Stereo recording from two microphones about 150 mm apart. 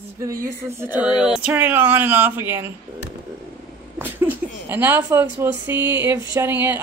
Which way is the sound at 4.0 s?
15° right (ahead or behind).